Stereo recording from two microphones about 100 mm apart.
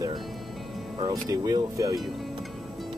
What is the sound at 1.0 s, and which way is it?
Speech, 40° right (ahead or behind).